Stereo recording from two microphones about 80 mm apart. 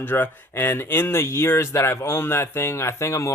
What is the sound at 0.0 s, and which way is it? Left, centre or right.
Speech, left.